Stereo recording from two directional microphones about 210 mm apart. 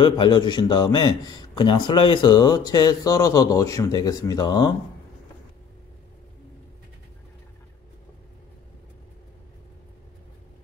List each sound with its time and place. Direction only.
0.0 s a man's voice: 20° left (ahead or behind)